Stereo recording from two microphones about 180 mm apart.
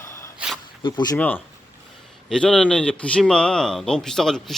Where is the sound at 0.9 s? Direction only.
25° left (ahead or behind).